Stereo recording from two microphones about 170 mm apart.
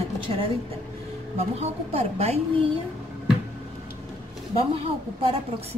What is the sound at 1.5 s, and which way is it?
Speech, 40° right (ahead or behind).